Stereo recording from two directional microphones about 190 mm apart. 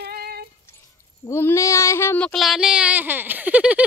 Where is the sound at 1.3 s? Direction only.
15° left (ahead or behind).